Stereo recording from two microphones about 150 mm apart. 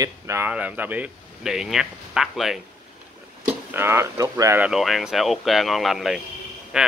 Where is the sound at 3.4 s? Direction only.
15° right (ahead or behind).